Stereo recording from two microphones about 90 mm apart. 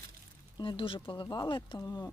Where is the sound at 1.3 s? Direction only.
50° left (ahead or behind).